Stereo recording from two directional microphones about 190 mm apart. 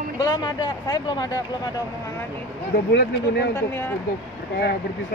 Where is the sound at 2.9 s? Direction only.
60° left (ahead or behind).